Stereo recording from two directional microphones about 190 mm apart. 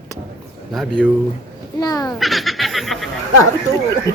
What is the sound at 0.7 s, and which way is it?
Speech, centre (ahead or behind).